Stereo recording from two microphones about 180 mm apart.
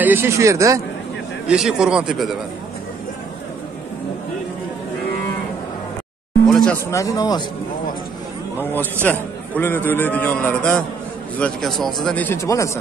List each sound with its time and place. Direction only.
0.0 s speech: 10° right (ahead or behind)
1.5 s speech: 5° right (ahead or behind)
6.4 s a sound: 5° left (ahead or behind)
6.9 s speech: 15° left (ahead or behind)
9.0 s speech: 10° left (ahead or behind)